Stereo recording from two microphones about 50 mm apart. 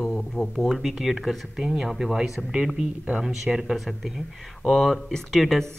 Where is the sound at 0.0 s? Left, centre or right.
Centre.